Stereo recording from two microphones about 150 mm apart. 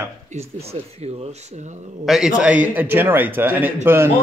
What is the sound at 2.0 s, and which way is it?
A man's voice, 5° right (ahead or behind).